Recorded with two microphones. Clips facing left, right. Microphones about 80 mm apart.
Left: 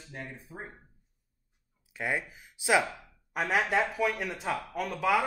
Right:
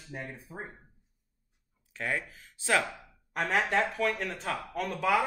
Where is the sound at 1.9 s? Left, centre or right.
Centre.